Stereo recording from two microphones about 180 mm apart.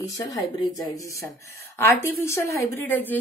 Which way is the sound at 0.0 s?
20° left (ahead or behind).